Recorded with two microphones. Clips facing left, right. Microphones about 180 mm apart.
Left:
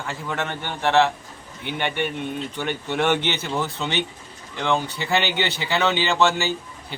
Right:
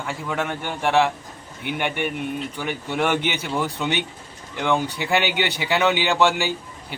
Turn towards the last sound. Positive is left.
turn(degrees=-15)  # may be behind; listen again after turning